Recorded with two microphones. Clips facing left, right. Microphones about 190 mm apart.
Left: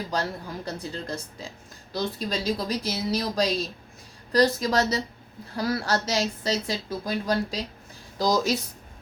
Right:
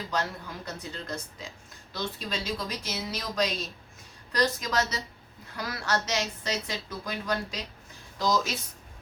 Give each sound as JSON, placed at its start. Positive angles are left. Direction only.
{"t": 0.1, "sound": "speech", "side_deg": 35}